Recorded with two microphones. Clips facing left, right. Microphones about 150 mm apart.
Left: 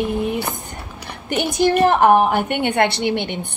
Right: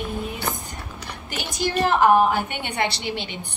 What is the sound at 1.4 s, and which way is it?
A woman's voice, 55° left (ahead or behind).